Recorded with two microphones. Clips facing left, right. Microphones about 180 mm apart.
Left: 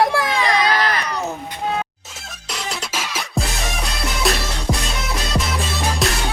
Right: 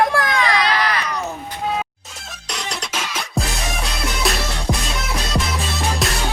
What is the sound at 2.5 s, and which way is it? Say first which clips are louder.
Music: even; centre (ahead or behind).